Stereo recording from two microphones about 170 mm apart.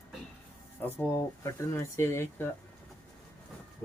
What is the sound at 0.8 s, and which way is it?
Speech, 15° left (ahead or behind).